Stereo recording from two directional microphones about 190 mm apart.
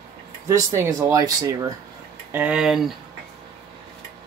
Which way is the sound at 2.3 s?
5° right (ahead or behind).